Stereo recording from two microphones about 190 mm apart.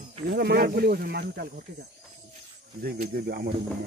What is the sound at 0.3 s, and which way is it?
Speech, 55° right (ahead or behind).